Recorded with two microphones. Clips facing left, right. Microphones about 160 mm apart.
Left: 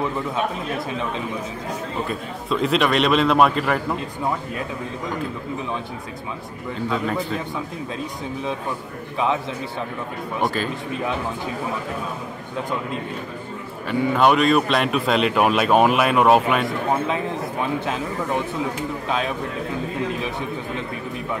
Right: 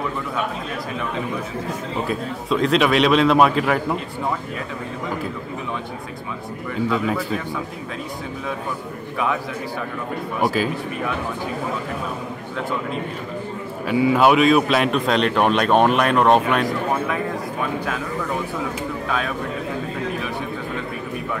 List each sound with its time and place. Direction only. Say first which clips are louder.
2.0 s a man's voice: right 3 dB; centre (ahead or behind)
10.4 s a man's voice: right 3 dB; 5° right (ahead or behind)
13.8 s a man's voice: right 2 dB; 5° right (ahead or behind)
17.7 s speech: left 1 dB; 25° left (ahead or behind)
19.0 s speech: left 1 dB; 20° left (ahead or behind)